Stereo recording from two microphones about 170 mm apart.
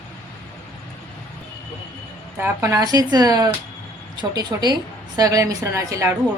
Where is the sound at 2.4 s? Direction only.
15° right (ahead or behind).